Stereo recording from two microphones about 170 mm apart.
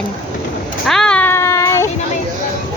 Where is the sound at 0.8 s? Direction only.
5° left (ahead or behind).